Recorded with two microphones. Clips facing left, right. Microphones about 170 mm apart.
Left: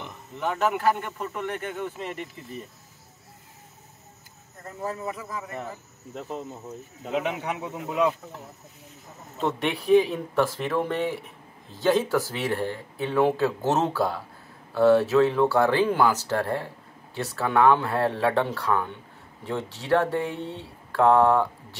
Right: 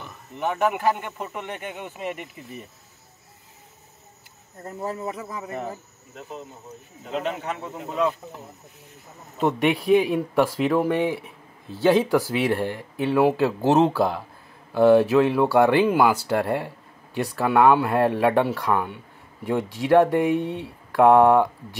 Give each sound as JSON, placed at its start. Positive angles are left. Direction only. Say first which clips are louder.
{"t": 0.4, "sound": "speech", "louder": "right 2 dB", "side_deg": -15}
{"t": 4.6, "sound": "speech", "louder": "right 2 dB", "side_deg": -25}
{"t": 7.2, "sound": "speech", "louder": "even", "side_deg": 10}
{"t": 9.4, "sound": "speech", "louder": "right 5 dB", "side_deg": -10}